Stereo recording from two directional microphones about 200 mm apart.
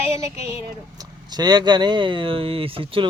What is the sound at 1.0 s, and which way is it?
Speech, 20° right (ahead or behind).